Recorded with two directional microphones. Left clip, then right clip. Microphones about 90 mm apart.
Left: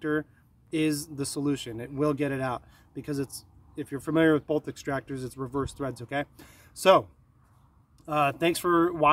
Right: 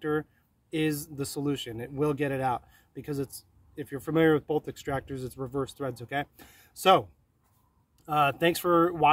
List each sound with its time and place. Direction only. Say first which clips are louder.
0.7 s speech: left 2 dB; 30° left (ahead or behind)